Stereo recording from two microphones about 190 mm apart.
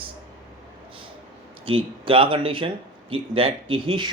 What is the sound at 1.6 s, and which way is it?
Speech, 30° right (ahead or behind).